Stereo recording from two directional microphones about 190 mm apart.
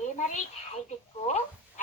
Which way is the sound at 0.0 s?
40° left (ahead or behind).